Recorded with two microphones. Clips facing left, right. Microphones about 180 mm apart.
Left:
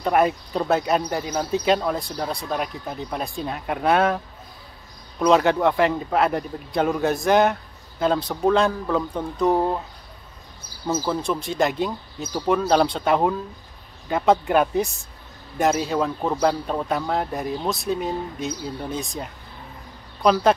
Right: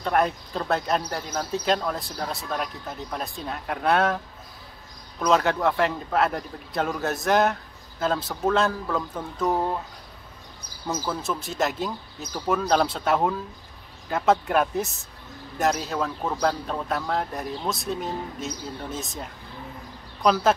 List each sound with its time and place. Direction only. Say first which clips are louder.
0.0 s speech: left 4 dB; 5° left (ahead or behind)
5.2 s speech: left 4 dB; centre (ahead or behind)
9.5 s speech: left 4 dB; 15° left (ahead or behind)
10.9 s speech: left 5 dB; centre (ahead or behind)
16.2 s speech: left 4 dB; 15° left (ahead or behind)
16.9 s speech: left 2 dB; centre (ahead or behind)